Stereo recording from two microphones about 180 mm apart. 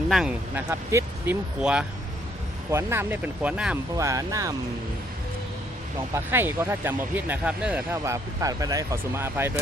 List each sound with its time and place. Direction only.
0.1 s speech: 5° right (ahead or behind)
3.9 s speech: 20° right (ahead or behind)
6.1 s speech: 15° right (ahead or behind)